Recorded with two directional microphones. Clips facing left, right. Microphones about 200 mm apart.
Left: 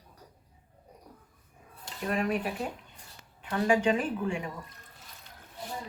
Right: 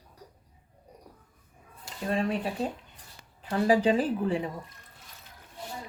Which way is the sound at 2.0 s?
30° right (ahead or behind).